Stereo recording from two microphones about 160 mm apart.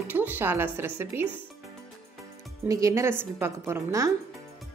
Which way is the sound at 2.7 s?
20° right (ahead or behind).